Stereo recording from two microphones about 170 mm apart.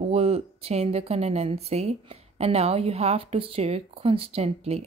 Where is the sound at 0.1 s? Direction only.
35° right (ahead or behind).